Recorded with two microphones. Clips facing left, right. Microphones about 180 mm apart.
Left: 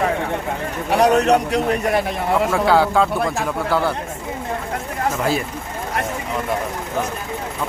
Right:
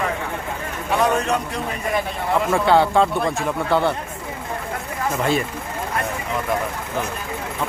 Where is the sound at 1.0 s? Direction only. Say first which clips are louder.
Left 7 dB; 75° left (ahead or behind).